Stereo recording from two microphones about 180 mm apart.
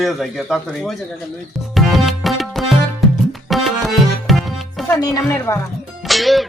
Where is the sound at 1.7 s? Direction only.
Centre (ahead or behind).